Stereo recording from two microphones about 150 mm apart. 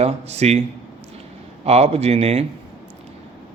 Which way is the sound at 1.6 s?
45° right (ahead or behind).